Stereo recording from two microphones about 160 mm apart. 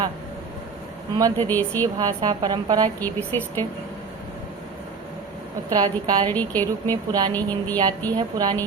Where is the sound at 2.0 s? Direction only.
25° right (ahead or behind).